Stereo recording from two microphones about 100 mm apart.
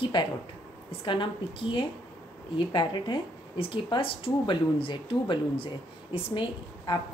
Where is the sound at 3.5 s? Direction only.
65° left (ahead or behind).